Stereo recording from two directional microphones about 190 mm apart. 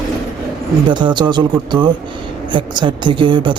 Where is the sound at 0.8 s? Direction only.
25° right (ahead or behind).